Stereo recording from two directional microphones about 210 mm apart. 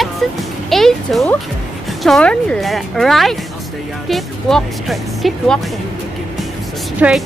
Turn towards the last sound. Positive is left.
turn(degrees=-10)  # may be behind; listen again after turning